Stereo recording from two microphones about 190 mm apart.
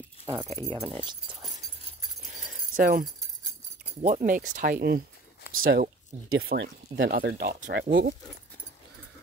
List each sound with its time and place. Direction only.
0.3 s speech: 25° right (ahead or behind)
2.7 s speech: 45° right (ahead or behind)
6.2 s speech: 90° right; by 8.1 s 50° right (ahead or behind)